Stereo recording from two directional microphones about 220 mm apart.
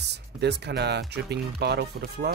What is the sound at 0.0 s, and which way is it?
Speech, 50° right (ahead or behind).